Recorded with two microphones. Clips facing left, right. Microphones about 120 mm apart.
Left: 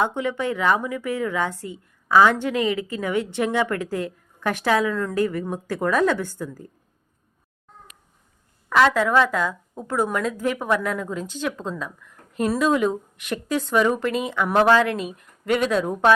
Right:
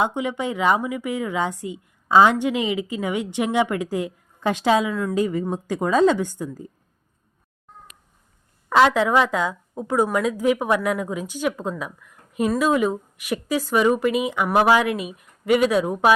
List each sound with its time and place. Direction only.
0.0 s a woman's voice: 15° right (ahead or behind)
8.7 s a woman's voice: 15° right (ahead or behind)